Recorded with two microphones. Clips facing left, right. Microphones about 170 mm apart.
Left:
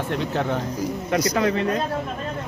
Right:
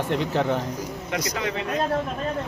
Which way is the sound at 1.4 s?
45° left (ahead or behind).